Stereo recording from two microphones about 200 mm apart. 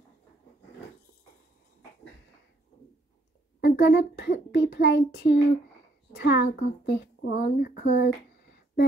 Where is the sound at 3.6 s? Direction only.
60° left (ahead or behind).